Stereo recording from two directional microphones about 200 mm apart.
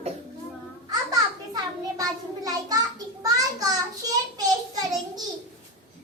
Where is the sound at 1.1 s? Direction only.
20° right (ahead or behind).